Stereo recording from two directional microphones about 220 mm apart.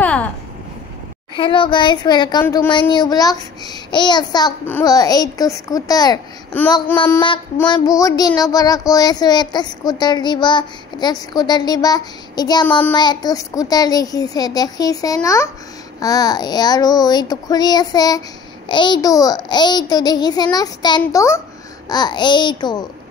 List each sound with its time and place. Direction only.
0.0 s a sound: 5° left (ahead or behind)
1.3 s a child's voice: 20° left (ahead or behind)
2.4 s child singing: 10° left (ahead or behind)
2.7 s child singing: 20° left (ahead or behind)
18.7 s a child's voice: 20° left (ahead or behind)
21.0 s child singing: 15° left (ahead or behind)
21.8 s a child's voice: 20° left (ahead or behind)